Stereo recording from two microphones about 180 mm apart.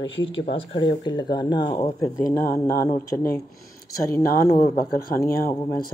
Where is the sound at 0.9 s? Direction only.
25° left (ahead or behind).